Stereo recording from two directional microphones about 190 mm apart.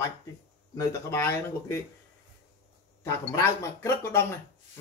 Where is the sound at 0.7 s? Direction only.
15° left (ahead or behind).